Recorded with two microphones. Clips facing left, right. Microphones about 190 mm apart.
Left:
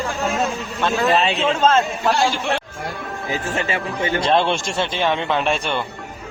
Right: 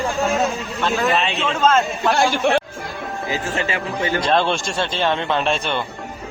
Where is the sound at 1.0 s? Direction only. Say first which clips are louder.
Left 2 dB; 35° left (ahead or behind).